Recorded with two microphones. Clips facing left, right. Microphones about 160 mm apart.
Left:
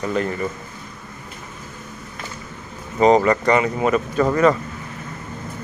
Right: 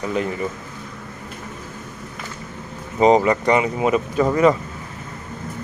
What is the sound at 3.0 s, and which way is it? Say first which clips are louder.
Speech: even; 15° right (ahead or behind).